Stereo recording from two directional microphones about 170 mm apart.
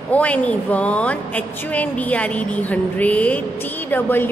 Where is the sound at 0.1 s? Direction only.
10° left (ahead or behind).